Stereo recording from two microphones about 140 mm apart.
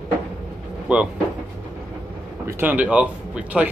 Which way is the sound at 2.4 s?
10° right (ahead or behind).